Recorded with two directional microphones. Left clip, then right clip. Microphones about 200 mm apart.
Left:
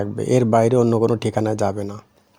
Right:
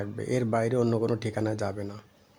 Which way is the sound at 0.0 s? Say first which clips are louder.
Left 11 dB; 35° left (ahead or behind).